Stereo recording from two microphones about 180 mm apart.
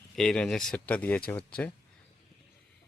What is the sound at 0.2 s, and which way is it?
Speech, 5° left (ahead or behind).